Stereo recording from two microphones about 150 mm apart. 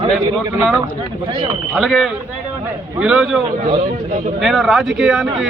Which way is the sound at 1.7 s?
Centre (ahead or behind).